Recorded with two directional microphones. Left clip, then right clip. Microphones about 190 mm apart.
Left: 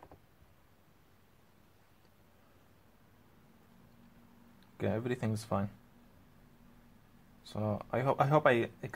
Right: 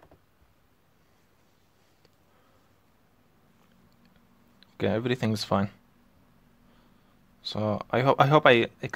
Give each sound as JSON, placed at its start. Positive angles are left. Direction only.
{"t": 4.7, "sound": "speech", "side_deg": -35}
{"t": 7.4, "sound": "speech", "side_deg": -35}